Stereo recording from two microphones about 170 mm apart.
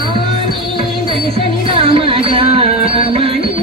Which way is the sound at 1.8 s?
30° right (ahead or behind).